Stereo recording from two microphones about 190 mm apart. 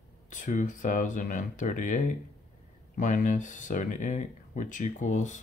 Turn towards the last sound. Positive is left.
turn(degrees=40)  # may be behind; listen again after turning